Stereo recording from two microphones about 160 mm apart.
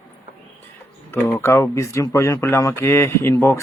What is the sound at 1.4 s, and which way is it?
Speech, 15° left (ahead or behind).